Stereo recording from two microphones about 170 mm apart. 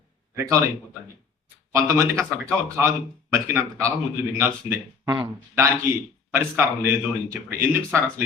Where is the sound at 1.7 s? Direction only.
15° right (ahead or behind).